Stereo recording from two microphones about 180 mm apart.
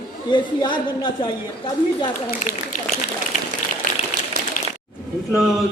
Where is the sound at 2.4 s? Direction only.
45° left (ahead or behind).